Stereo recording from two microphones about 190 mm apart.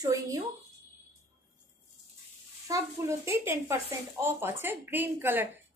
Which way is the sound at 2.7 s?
15° right (ahead or behind).